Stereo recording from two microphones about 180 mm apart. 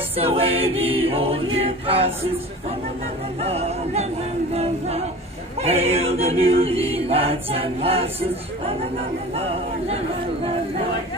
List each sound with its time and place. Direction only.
0.2 s choir: 35° right (ahead or behind)
3.4 s choir: 35° right (ahead or behind)